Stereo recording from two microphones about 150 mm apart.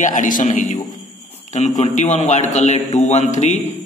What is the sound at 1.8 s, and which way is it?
A man's voice, 50° left (ahead or behind).